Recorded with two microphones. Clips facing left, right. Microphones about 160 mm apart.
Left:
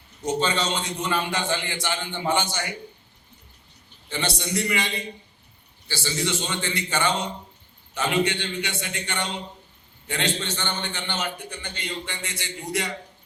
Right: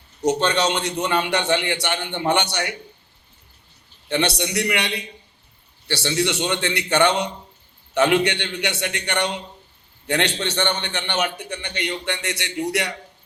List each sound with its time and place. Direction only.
0.2 s a man's voice: 75° right (ahead or behind)
4.1 s a man's voice: 70° right (ahead or behind)